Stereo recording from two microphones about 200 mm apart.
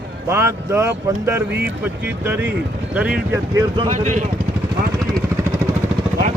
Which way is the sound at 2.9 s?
5° right (ahead or behind).